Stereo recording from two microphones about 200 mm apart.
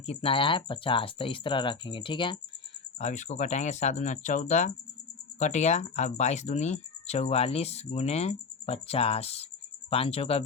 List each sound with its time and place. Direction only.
0.0 s speech: 30° left (ahead or behind)
3.0 s speech: 35° left (ahead or behind)